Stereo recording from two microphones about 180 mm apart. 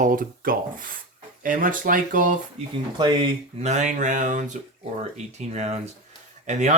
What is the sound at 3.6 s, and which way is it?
Speech, 40° right (ahead or behind).